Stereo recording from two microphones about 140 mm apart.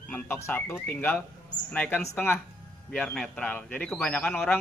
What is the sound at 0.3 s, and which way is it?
Speech, 10° left (ahead or behind).